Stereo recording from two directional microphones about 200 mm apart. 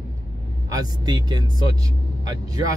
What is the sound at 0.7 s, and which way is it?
Speech, 20° right (ahead or behind).